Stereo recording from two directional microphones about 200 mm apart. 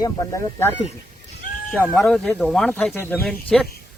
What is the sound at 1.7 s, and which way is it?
Speech, 10° left (ahead or behind).